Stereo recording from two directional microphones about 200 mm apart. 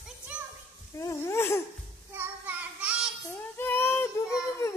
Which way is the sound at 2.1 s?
10° right (ahead or behind).